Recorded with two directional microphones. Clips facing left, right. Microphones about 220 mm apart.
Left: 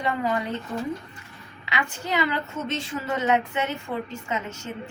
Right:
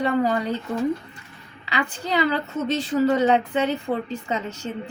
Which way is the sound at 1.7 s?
35° right (ahead or behind).